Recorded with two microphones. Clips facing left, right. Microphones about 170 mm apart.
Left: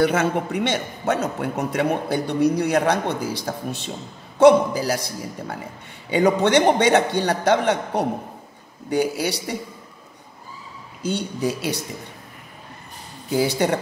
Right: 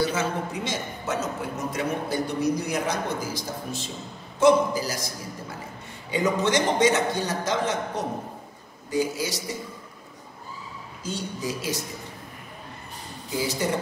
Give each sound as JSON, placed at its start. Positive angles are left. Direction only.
{"t": 0.0, "sound": "a man's voice", "side_deg": 60}
{"t": 11.0, "sound": "a man's voice", "side_deg": 65}
{"t": 13.3, "sound": "speech", "side_deg": 65}